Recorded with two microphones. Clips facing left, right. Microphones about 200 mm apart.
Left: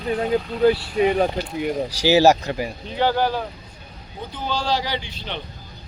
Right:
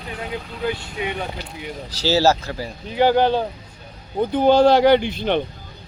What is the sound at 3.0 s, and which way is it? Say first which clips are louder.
Speech: right 4 dB; 15° right (ahead or behind).